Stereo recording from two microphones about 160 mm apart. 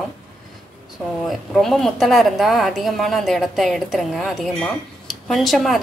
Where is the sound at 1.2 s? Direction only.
Centre (ahead or behind).